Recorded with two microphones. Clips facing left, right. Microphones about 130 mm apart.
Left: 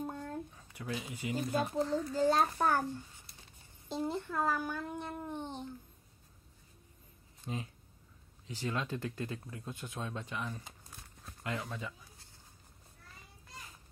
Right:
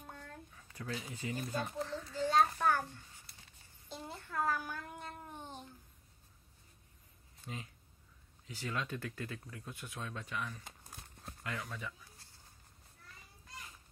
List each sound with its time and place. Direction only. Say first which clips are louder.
0.0 s a sound: left 11 dB; 35° left (ahead or behind)
0.7 s speech: left 2 dB; 20° left (ahead or behind)
2.1 s a child's voice: left 1 dB; 35° left (ahead or behind)
3.9 s speech: left 7 dB; 25° left (ahead or behind)
7.4 s speech: left 6 dB; 25° left (ahead or behind)